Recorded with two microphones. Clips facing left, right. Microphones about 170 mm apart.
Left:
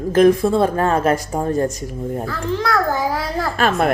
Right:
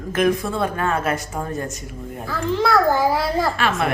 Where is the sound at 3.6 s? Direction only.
45° left (ahead or behind).